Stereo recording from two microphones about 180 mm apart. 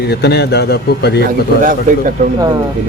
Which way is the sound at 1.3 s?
50° right (ahead or behind).